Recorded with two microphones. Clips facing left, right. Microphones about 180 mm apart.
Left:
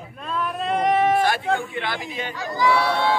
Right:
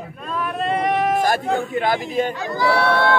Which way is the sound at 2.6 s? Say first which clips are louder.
Right 2 dB; 60° right (ahead or behind).